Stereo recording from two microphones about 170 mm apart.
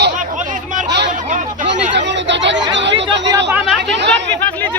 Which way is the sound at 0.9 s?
90° right.